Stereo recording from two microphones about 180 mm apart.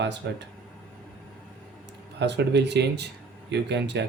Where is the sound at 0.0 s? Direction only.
75° right (ahead or behind).